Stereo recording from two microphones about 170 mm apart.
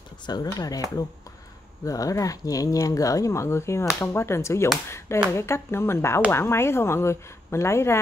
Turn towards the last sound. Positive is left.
turn(degrees=15)  # may be behind; listen again after turning